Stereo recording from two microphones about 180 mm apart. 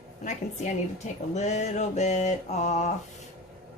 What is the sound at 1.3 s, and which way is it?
Mantra, 40° left (ahead or behind).